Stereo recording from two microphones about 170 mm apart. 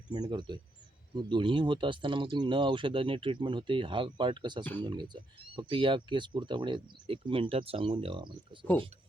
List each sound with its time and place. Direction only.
0.1 s speech: 25° right (ahead or behind)
4.6 s speech: 10° left (ahead or behind)
4.9 s speech: 25° right (ahead or behind)